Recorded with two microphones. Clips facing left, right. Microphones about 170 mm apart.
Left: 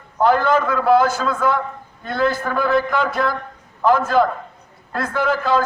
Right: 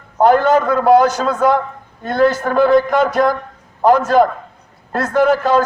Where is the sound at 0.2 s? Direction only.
40° right (ahead or behind).